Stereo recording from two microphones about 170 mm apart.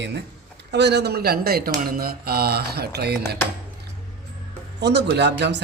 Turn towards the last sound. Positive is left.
turn(degrees=-90)